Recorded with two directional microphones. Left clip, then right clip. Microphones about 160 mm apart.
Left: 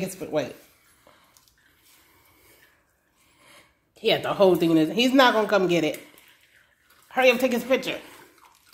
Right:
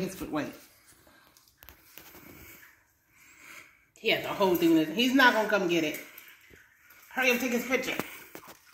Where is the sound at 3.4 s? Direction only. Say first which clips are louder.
Right 4 dB; 30° left (ahead or behind).